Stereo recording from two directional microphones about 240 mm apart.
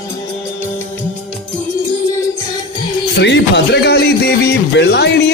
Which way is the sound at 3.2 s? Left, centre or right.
Left.